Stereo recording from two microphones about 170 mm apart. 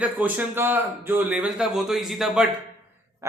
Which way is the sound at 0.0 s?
10° right (ahead or behind).